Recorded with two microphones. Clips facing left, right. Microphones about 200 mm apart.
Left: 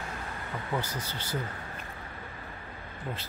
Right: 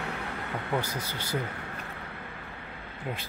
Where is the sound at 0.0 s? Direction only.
70° right (ahead or behind).